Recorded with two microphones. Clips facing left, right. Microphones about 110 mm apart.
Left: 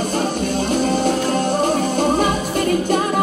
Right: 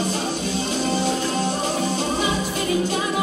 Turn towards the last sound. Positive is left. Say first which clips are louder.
# left 4 dB
turn(degrees=50)  # may be behind; listen again after turning